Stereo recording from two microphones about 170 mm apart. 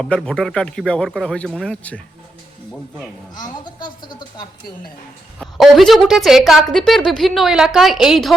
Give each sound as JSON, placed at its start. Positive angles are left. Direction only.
{"t": 0.0, "sound": "a woman's voice", "side_deg": 5}
{"t": 3.3, "sound": "speech", "side_deg": 25}
{"t": 5.4, "sound": "a woman's voice", "side_deg": 0}